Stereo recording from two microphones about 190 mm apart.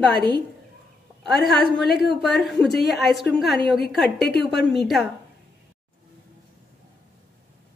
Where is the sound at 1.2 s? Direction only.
Centre (ahead or behind).